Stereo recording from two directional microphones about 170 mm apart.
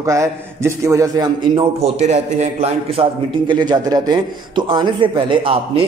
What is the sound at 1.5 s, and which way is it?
A man's voice, 40° right (ahead or behind).